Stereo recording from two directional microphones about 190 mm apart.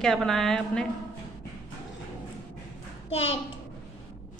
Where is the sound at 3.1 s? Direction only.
30° left (ahead or behind).